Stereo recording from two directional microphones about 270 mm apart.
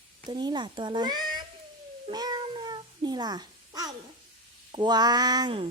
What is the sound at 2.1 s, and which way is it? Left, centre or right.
Cat, centre.